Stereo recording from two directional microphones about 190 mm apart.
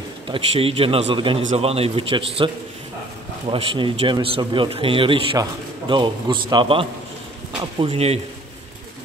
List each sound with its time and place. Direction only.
0.3 s a man's voice: 30° right (ahead or behind)